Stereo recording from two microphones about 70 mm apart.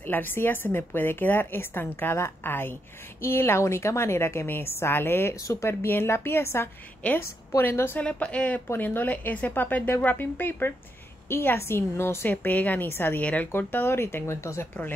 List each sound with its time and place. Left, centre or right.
0.0 s a woman's voice: left
8.0 s a woman's voice: centre; by 14.7 s left